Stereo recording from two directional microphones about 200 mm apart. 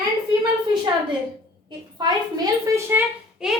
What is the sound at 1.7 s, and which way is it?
A woman's voice, 20° right (ahead or behind).